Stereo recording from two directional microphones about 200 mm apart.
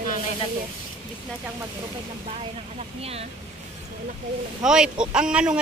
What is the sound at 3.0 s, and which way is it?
Speech, 30° right (ahead or behind).